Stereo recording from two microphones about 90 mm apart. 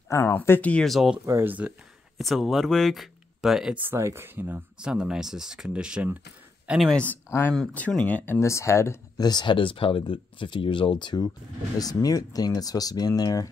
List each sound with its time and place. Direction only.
0.3 s speech: 20° left (ahead or behind)
0.8 s speech: centre (ahead or behind)
1.2 s speech: 25° right (ahead or behind)
2.1 s speech: centre (ahead or behind)
3.7 s speech: 25° right (ahead or behind)
4.8 s speech: 10° right (ahead or behind)
6.9 s speech: 15° left (ahead or behind)
7.2 s speech: 30° left (ahead or behind)
7.9 s speech: 15° left (ahead or behind)
8.4 s speech: 30° left (ahead or behind)
9.1 s speech: 50° left (ahead or behind)
11.8 s speech: 45° left (ahead or behind)